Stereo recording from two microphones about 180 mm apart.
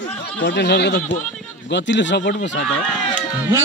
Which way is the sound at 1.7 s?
80° left.